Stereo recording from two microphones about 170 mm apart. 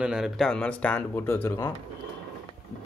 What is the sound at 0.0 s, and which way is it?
Speech, 5° right (ahead or behind).